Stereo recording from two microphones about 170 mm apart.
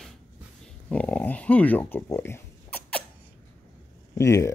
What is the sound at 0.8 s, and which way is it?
Speech, 10° left (ahead or behind).